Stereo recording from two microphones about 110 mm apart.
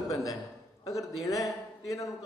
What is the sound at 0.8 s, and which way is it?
A man's voice, 30° left (ahead or behind).